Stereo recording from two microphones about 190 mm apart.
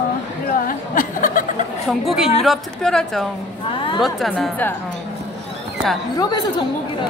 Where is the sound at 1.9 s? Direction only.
Centre (ahead or behind).